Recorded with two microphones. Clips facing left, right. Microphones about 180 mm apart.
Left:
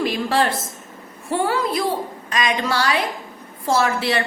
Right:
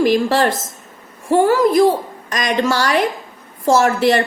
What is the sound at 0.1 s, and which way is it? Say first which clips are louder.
A woman's voice: right 5 dB; 45° right (ahead or behind).